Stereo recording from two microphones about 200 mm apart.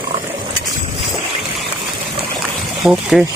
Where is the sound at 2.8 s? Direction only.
Centre (ahead or behind).